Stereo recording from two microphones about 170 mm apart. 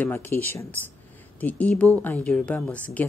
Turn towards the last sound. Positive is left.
turn(degrees=10)  # may be behind; listen again after turning